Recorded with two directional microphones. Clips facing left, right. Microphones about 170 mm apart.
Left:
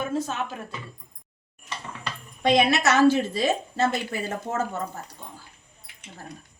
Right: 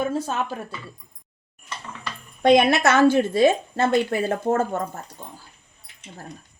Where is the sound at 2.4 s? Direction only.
50° right (ahead or behind).